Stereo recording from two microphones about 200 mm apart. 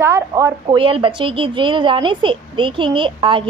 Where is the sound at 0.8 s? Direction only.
25° right (ahead or behind).